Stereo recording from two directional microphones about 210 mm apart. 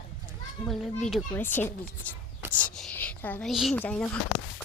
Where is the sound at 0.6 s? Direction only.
5° left (ahead or behind).